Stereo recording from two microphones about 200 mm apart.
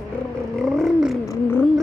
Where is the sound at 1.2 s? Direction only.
15° left (ahead or behind).